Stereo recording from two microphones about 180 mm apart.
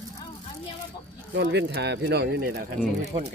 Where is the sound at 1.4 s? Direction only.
70° right (ahead or behind).